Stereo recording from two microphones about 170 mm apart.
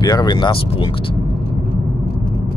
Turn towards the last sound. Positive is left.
turn(degrees=30)  # may be behind; listen again after turning